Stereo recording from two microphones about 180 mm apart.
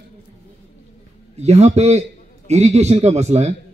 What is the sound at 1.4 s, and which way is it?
Speech, 40° right (ahead or behind).